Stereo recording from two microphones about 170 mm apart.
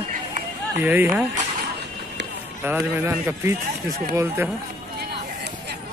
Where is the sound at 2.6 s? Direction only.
15° right (ahead or behind).